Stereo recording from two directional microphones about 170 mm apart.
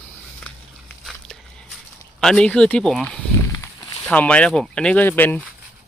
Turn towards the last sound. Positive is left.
turn(degrees=10)  # may be behind; listen again after turning